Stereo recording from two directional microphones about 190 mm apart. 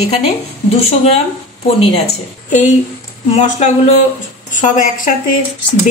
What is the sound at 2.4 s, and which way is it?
A woman's voice, 40° left (ahead or behind).